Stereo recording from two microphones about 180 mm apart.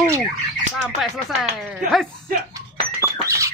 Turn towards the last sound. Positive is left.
turn(degrees=-15)  # may be behind; listen again after turning